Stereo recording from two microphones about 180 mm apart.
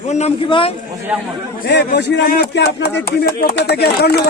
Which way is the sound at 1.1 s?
5° right (ahead or behind).